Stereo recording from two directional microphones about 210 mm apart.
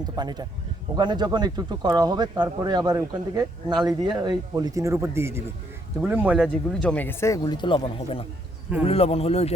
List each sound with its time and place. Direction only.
0.2 s speech: 20° right (ahead or behind); by 9.5 s 30° left (ahead or behind)